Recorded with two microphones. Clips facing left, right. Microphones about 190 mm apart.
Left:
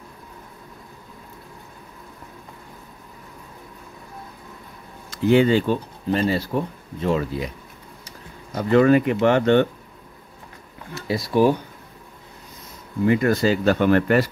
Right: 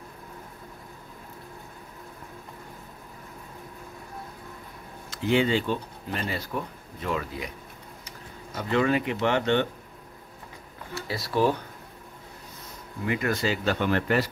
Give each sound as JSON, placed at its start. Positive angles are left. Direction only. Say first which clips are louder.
{"t": 5.3, "sound": "speech", "louder": "left 7 dB", "side_deg": 45}
{"t": 8.5, "sound": "speech", "louder": "left 9 dB", "side_deg": 45}
{"t": 11.0, "sound": "speech", "louder": "left 6 dB", "side_deg": 15}
{"t": 13.0, "sound": "speech", "louder": "left 9 dB", "side_deg": 35}